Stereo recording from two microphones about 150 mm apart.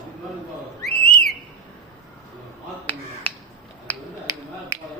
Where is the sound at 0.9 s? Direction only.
90° left.